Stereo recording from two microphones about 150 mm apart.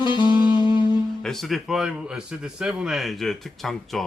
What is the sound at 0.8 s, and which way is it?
Mantra, 30° left (ahead or behind).